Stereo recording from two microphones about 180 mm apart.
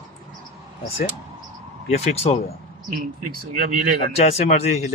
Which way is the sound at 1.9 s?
35° left (ahead or behind).